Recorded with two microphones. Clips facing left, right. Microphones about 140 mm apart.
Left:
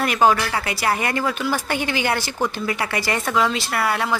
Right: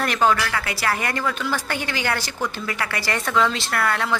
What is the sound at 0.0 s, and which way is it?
A woman's voice, 10° left (ahead or behind).